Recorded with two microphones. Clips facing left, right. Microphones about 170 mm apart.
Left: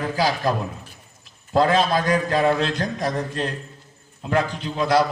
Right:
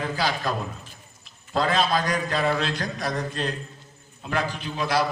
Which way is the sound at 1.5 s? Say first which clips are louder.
Left 5 dB; 45° left (ahead or behind).